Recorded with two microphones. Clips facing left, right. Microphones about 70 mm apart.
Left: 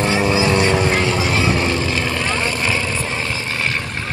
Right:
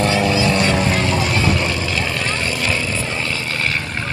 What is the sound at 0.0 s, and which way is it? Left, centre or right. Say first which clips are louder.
Vehicle: even; left.